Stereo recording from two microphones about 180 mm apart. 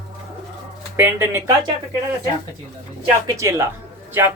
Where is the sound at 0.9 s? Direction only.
10° right (ahead or behind).